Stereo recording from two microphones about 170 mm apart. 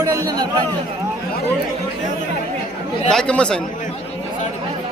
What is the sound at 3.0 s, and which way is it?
Speech, 5° left (ahead or behind).